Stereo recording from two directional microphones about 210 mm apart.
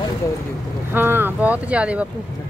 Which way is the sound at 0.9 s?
10° right (ahead or behind).